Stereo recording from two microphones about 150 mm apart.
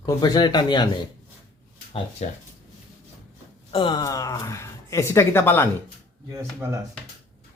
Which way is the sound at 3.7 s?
30° left (ahead or behind).